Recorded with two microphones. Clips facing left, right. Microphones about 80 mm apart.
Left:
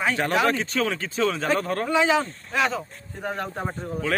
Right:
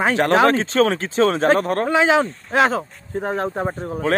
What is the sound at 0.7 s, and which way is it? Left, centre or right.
Speech, right.